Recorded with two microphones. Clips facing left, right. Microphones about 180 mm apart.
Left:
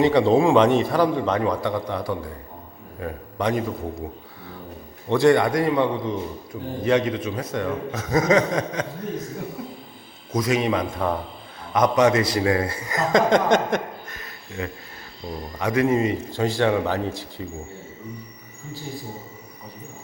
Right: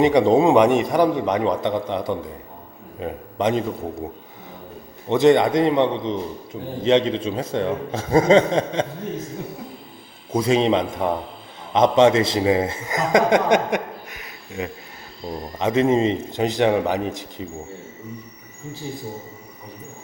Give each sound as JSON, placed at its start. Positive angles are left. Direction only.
{"t": 0.0, "sound": "a man's voice", "side_deg": -15}
{"t": 5.0, "sound": "a man's voice", "side_deg": -20}
{"t": 10.3, "sound": "a man's voice", "side_deg": -30}